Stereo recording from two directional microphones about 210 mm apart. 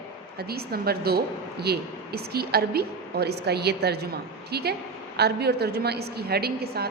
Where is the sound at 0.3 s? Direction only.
50° right (ahead or behind).